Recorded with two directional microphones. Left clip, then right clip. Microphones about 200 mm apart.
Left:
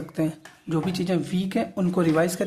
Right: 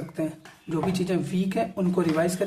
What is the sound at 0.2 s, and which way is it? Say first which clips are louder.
A woman's voice: left 4 dB; 45° left (ahead or behind).